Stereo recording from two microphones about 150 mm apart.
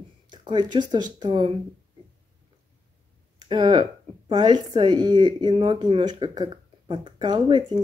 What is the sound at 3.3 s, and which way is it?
A woman's voice, 30° right (ahead or behind).